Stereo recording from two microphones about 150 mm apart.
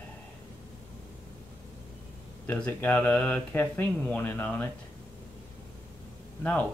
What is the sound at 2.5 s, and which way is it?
Speech, 10° left (ahead or behind).